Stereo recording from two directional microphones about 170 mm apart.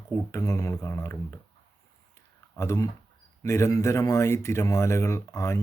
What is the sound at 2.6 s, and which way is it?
Speech, 15° left (ahead or behind).